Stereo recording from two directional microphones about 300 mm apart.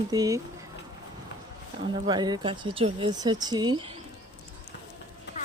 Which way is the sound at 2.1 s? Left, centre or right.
Centre.